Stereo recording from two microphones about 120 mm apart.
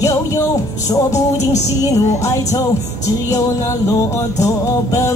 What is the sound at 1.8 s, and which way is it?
Music, 30° left (ahead or behind).